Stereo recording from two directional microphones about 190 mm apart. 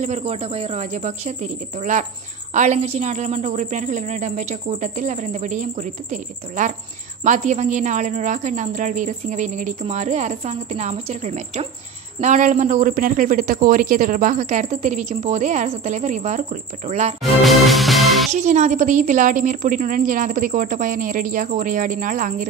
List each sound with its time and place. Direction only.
0.0 s a man's voice: 35° right (ahead or behind)
17.2 s music: centre (ahead or behind)
18.3 s a woman's voice: 40° right (ahead or behind)